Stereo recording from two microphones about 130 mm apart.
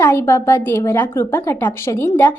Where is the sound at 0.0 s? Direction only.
15° left (ahead or behind).